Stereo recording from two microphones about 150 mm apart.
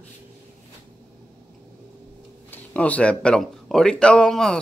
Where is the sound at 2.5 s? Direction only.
10° left (ahead or behind).